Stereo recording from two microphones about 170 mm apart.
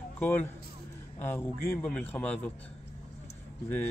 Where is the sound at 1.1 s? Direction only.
15° left (ahead or behind).